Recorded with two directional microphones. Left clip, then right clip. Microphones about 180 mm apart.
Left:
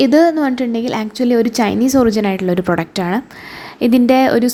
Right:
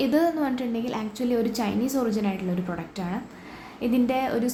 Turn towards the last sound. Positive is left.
turn(degrees=50)  # may be behind; listen again after turning